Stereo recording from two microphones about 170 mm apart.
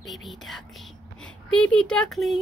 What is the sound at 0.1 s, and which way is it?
Speech, centre (ahead or behind).